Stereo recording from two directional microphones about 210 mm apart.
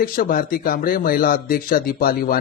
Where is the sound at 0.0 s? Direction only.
45° left (ahead or behind).